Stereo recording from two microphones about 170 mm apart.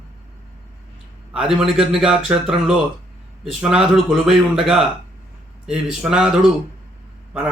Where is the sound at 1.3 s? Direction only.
5° right (ahead or behind).